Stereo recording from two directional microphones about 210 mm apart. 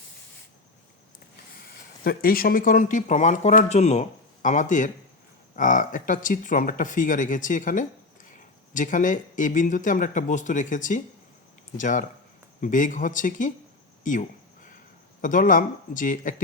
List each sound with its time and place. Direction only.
2.0 s speech: 45° left (ahead or behind)
14.0 s a sound: 40° left (ahead or behind)
15.2 s speech: 40° left (ahead or behind)